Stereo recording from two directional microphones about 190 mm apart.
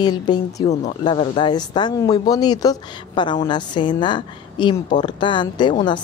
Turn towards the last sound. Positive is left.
turn(degrees=25)  # may be behind; listen again after turning